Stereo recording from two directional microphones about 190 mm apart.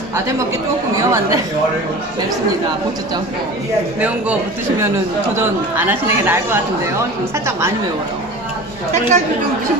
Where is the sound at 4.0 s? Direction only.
5° right (ahead or behind).